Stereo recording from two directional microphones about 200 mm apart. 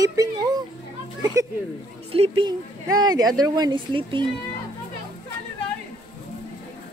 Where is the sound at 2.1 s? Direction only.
25° right (ahead or behind).